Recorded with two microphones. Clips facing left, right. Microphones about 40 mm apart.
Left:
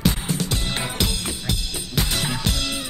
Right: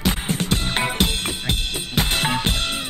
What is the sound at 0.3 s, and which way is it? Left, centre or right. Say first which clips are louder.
Music: right 3 dB; right.